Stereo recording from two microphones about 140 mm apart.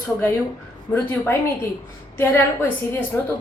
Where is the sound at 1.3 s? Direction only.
15° left (ahead or behind).